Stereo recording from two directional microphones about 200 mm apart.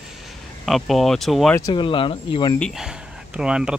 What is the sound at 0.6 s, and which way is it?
Speech, centre (ahead or behind).